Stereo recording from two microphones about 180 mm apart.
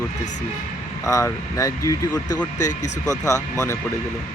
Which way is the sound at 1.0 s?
15° left (ahead or behind).